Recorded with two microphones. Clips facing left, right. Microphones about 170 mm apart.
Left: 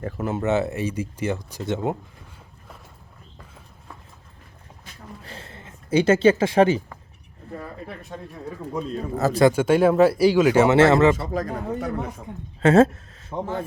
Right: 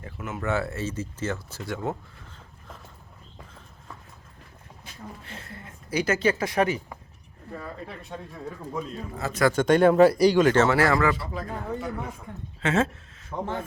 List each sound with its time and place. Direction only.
0.0 s speech: 35° left (ahead or behind)
0.4 s speech: 20° left (ahead or behind)
5.2 s a sound: 30° left (ahead or behind)
9.1 s speech: 40° left (ahead or behind)
9.5 s speech: 5° left (ahead or behind)
10.8 s speech: 25° left (ahead or behind)
11.3 s speech: 40° left (ahead or behind)
13.3 s speech: 15° left (ahead or behind)